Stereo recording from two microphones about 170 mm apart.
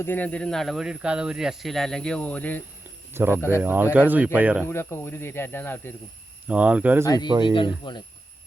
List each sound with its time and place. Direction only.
0.0 s speech: 10° left (ahead or behind)
3.1 s speech: 15° right (ahead or behind)
3.3 s speech: 15° left (ahead or behind)
3.6 s speech: 10° right (ahead or behind)
4.6 s speech: 15° left (ahead or behind)
6.5 s speech: 10° right (ahead or behind)
7.0 s speech: 20° left (ahead or behind)